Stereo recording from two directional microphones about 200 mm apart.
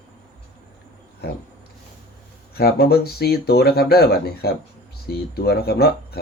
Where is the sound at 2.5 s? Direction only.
50° left (ahead or behind).